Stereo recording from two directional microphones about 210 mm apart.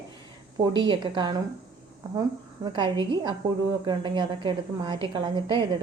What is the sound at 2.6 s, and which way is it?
Speech, 20° right (ahead or behind).